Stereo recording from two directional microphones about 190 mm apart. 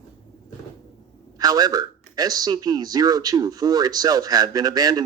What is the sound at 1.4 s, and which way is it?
A man's voice, 20° right (ahead or behind).